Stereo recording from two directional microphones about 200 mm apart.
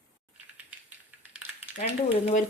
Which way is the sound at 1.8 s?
35° left (ahead or behind).